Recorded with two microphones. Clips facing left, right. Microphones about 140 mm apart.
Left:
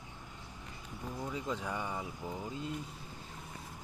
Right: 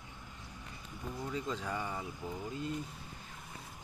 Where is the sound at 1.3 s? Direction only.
15° left (ahead or behind).